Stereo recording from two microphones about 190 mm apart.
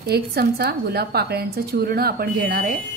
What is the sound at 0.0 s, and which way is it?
A woman's voice, 55° right (ahead or behind).